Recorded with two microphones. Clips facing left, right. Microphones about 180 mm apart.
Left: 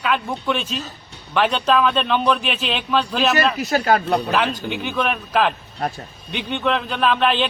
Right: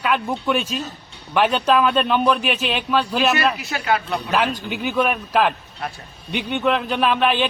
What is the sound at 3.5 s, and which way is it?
Speech, 40° left (ahead or behind).